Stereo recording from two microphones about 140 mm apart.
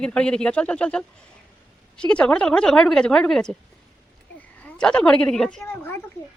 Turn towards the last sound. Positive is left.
turn(degrees=20)  # may be behind; listen again after turning